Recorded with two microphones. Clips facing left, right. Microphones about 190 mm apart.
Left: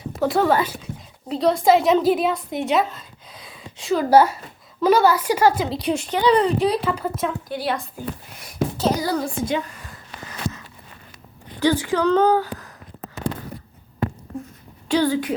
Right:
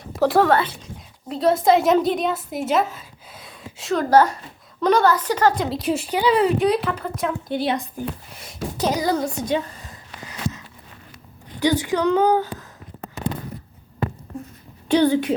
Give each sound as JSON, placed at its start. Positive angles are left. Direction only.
{"t": 0.0, "sound": "a woman's voice", "side_deg": 0}
{"t": 5.6, "sound": "a woman's voice", "side_deg": 0}
{"t": 7.4, "sound": "a woman's voice", "side_deg": -20}
{"t": 9.2, "sound": "a woman's voice", "side_deg": -30}
{"t": 11.6, "sound": "a woman's voice", "side_deg": -15}
{"t": 14.8, "sound": "a woman's voice", "side_deg": -20}